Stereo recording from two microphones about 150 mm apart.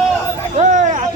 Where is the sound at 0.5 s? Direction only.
50° right (ahead or behind).